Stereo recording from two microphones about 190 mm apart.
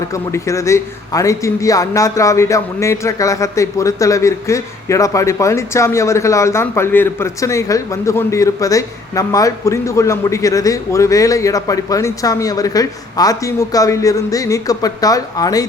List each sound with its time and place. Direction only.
0.1 s a man's voice: 15° left (ahead or behind)